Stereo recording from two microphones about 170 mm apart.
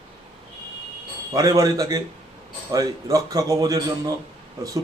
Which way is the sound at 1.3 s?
20° right (ahead or behind).